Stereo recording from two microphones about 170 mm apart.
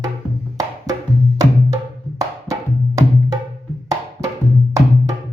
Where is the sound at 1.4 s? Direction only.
20° right (ahead or behind).